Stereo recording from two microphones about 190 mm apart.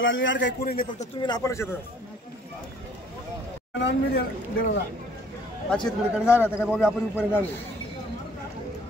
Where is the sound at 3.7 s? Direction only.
70° left (ahead or behind).